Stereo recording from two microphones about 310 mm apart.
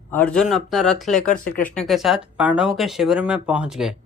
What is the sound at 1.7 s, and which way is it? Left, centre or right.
Speech, centre.